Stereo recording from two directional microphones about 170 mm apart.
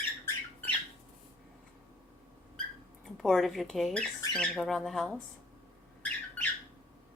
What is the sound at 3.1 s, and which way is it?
A woman's voice, centre (ahead or behind).